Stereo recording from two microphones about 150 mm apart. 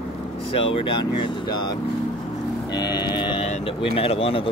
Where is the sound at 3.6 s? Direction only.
40° left (ahead or behind).